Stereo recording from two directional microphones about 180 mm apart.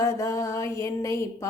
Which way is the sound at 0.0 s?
15° left (ahead or behind).